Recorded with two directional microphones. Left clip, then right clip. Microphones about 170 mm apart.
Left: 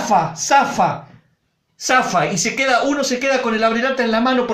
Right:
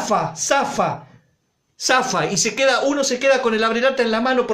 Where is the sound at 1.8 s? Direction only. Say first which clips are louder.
Left 2 dB; 45° right (ahead or behind).